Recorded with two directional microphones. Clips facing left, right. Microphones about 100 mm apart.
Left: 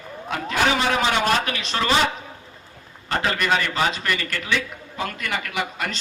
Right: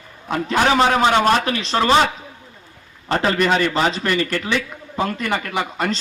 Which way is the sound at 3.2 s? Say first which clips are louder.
Right 4 dB; 35° right (ahead or behind).